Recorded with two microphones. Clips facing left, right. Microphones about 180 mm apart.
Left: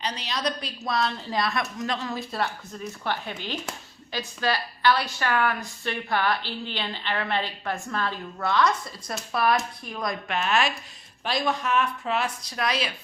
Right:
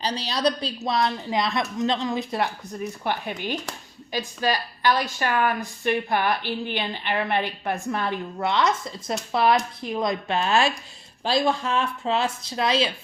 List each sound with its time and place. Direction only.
0.0 s speech: 35° right (ahead or behind)
0.8 s a woman's voice: 20° right (ahead or behind)